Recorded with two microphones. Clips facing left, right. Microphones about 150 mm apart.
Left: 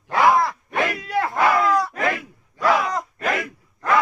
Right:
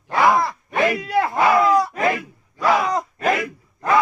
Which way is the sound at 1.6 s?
10° right (ahead or behind).